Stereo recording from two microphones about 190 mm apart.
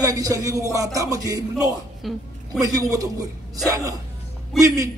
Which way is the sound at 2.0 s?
Centre (ahead or behind).